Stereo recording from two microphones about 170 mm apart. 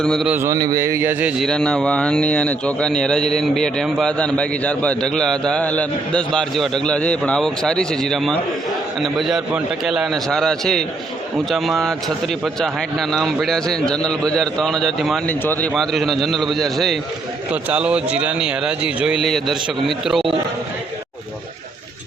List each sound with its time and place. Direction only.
0.0 s speech: 5° left (ahead or behind)
0.3 s a man's voice: 15° right (ahead or behind)
1.4 s speech: 5° left (ahead or behind)